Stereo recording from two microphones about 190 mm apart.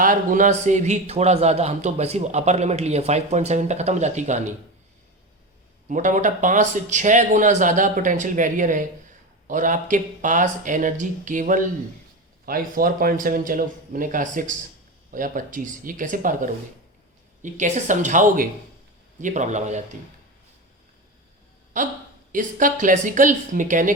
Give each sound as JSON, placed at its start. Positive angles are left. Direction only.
{"t": 0.0, "sound": "a man's voice", "side_deg": -45}
{"t": 5.9, "sound": "a man's voice", "side_deg": -40}
{"t": 21.7, "sound": "a man's voice", "side_deg": -40}